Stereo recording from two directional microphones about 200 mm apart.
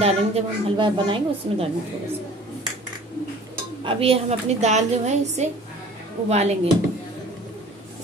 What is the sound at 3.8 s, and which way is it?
A woman's voice, 25° right (ahead or behind).